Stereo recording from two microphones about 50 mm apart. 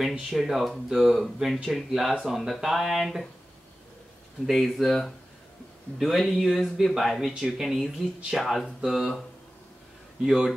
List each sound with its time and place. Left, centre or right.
0.3 s speech: centre
4.5 s speech: centre
5.9 s speech: centre
10.2 s a man's voice: centre